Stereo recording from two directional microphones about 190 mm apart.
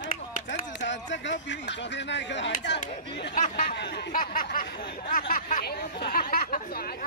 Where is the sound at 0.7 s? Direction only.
70° left (ahead or behind).